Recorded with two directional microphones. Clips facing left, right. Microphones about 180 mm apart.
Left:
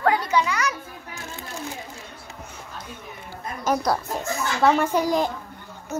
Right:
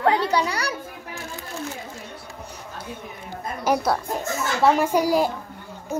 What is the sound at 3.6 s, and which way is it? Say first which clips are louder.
A child's voice: right 1 dB; 10° right (ahead or behind).